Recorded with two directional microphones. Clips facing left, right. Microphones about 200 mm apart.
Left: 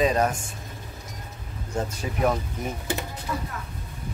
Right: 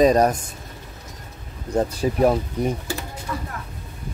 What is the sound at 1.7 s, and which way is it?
Speech, 35° right (ahead or behind).